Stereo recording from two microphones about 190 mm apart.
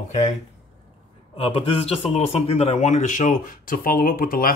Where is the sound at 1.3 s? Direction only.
30° left (ahead or behind).